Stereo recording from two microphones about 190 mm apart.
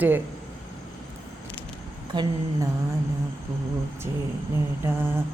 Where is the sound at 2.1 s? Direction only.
25° right (ahead or behind).